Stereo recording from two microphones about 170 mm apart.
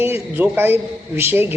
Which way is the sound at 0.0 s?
10° right (ahead or behind).